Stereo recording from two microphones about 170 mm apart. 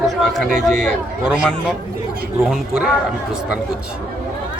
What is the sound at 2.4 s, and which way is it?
Speech, centre (ahead or behind).